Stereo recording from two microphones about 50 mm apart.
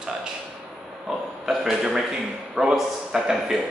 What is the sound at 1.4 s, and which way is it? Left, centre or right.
A man's voice, centre.